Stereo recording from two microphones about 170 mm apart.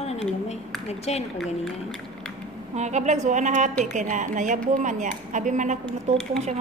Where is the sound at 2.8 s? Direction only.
40° right (ahead or behind).